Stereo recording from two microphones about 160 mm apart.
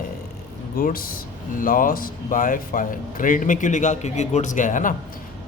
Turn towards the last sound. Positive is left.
turn(degrees=55)  # may be behind; listen again after turning